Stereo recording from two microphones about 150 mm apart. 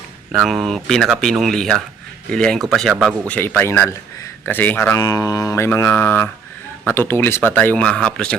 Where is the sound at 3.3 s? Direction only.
10° left (ahead or behind).